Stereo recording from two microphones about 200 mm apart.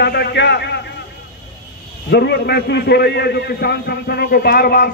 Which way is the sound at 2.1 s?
55° left (ahead or behind).